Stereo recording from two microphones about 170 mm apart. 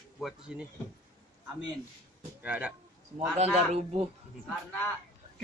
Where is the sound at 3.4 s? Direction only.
40° right (ahead or behind).